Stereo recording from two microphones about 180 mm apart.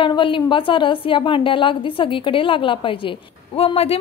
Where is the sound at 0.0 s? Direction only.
30° left (ahead or behind).